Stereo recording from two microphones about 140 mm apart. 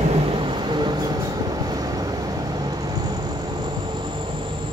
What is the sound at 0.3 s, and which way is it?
Train, 35° right (ahead or behind).